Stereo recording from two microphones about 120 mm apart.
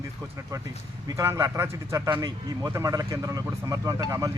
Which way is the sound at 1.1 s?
30° right (ahead or behind).